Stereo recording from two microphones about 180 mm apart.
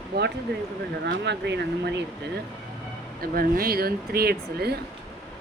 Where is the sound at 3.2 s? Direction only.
55° right (ahead or behind).